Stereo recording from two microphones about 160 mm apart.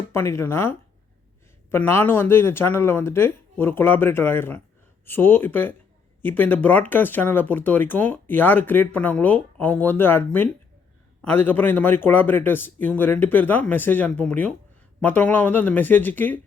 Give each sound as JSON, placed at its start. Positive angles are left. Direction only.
{"t": 0.1, "sound": "speech", "side_deg": 15}